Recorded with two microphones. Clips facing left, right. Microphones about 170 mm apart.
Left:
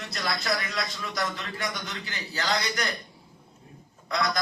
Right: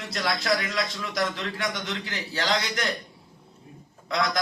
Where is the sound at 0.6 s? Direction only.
90° right.